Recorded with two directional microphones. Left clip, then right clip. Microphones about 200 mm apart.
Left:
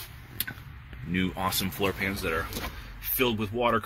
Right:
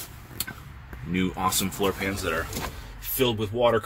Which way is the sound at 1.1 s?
5° right (ahead or behind).